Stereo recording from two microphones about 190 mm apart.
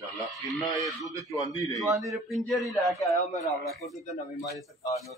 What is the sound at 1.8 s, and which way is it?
Speech, 15° right (ahead or behind).